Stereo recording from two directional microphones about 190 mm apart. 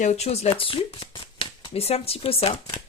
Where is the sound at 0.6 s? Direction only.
30° left (ahead or behind).